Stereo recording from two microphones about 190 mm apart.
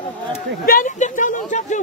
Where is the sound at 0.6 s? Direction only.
45° left (ahead or behind).